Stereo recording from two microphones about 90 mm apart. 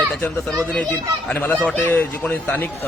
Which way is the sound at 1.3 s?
20° left (ahead or behind).